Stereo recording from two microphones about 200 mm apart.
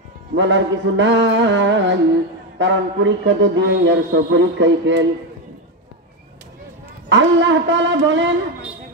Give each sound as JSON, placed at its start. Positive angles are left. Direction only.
{"t": 0.3, "sound": "a man's voice", "side_deg": -65}
{"t": 7.1, "sound": "a man's voice", "side_deg": -65}